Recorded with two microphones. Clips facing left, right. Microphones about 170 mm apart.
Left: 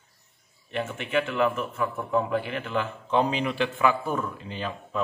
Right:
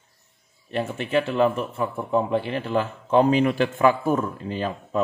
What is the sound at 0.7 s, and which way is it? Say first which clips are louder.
Speech: right 4 dB; 35° right (ahead or behind).